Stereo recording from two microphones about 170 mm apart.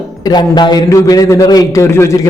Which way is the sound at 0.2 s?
25° left (ahead or behind).